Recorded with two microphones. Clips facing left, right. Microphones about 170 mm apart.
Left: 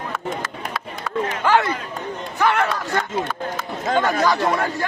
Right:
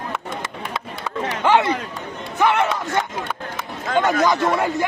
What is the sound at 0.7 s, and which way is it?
Chop, 25° right (ahead or behind).